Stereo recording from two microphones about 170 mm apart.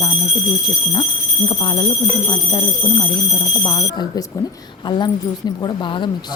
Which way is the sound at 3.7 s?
25° left (ahead or behind).